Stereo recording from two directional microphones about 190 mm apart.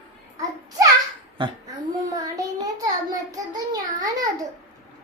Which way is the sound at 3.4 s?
20° right (ahead or behind).